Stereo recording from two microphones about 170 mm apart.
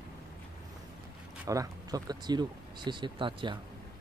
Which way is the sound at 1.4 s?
20° right (ahead or behind).